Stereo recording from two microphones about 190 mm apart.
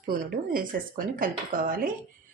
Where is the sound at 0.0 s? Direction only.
45° right (ahead or behind).